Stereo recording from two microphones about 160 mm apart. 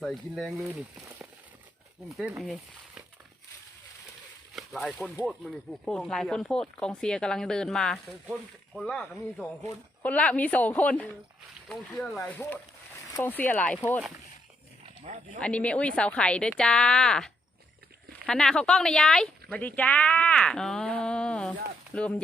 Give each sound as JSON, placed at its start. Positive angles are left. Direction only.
{"t": 0.0, "sound": "speech", "side_deg": 0}
{"t": 2.0, "sound": "speech", "side_deg": 0}
{"t": 4.5, "sound": "speech", "side_deg": 0}
{"t": 5.8, "sound": "a woman's voice", "side_deg": 5}
{"t": 12.2, "sound": "a woman's voice", "side_deg": 10}
{"t": 15.0, "sound": "speech", "side_deg": -45}
{"t": 15.4, "sound": "a woman's voice", "side_deg": 5}